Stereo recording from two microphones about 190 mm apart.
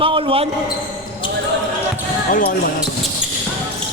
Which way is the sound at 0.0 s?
30° right (ahead or behind).